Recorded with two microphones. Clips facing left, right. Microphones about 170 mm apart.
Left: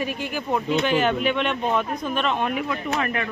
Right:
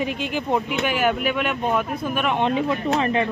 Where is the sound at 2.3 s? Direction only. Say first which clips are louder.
Right 4 dB; 25° right (ahead or behind).